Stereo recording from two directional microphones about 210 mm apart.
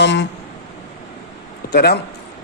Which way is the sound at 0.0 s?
55° left (ahead or behind).